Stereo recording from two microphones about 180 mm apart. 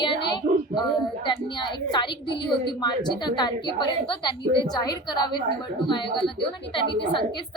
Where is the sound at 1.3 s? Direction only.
25° left (ahead or behind).